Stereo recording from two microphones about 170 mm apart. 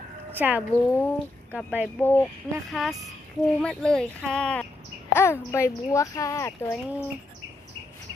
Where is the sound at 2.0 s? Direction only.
15° left (ahead or behind).